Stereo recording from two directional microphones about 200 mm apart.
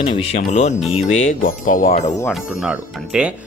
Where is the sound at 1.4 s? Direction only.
40° left (ahead or behind).